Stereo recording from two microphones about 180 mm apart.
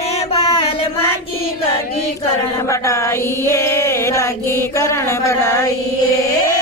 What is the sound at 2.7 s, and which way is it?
Female singing, 15° left (ahead or behind).